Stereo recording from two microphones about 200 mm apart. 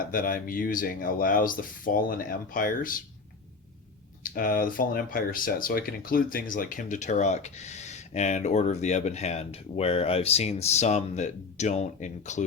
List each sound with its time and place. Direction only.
0.0 s speech: 45° left (ahead or behind)
4.2 s speech: 45° left (ahead or behind)